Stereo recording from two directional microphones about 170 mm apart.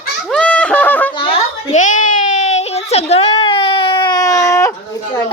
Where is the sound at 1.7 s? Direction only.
45° left (ahead or behind); by 4.7 s 20° left (ahead or behind).